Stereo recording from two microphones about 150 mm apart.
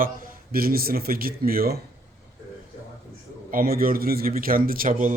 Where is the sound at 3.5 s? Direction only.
75° right (ahead or behind).